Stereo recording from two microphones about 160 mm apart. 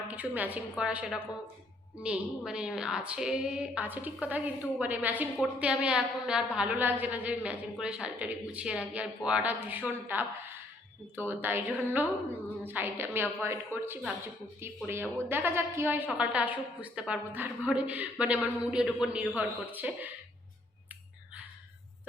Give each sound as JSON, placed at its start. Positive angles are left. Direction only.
{"t": 0.1, "sound": "speech", "side_deg": -10}
{"t": 11.3, "sound": "a man's voice", "side_deg": -15}